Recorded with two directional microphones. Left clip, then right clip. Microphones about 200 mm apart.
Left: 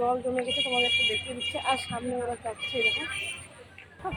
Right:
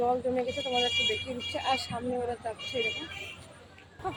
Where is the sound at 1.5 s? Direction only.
15° left (ahead or behind).